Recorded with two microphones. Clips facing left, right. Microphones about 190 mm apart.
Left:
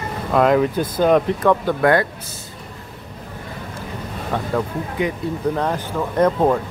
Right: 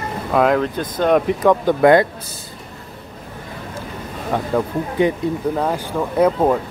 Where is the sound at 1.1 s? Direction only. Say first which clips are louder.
Right 2 dB; 15° right (ahead or behind).